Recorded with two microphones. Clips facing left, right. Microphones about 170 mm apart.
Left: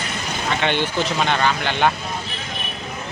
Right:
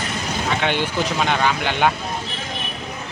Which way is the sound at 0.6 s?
5° right (ahead or behind).